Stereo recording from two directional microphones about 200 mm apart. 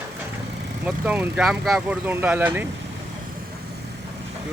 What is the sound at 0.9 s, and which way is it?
Speech, 5° right (ahead or behind).